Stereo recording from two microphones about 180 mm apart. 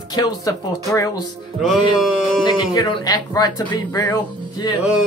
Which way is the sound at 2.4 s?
25° left (ahead or behind).